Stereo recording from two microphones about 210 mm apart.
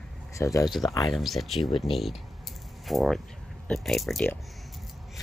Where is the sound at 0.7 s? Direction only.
Centre (ahead or behind).